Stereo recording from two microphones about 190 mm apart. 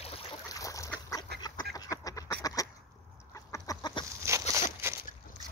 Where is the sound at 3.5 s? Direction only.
20° left (ahead or behind).